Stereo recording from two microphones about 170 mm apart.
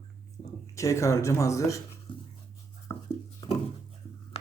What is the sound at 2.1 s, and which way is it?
Dog, 30° left (ahead or behind).